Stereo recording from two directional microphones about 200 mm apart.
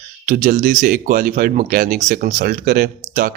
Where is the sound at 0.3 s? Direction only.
45° right (ahead or behind).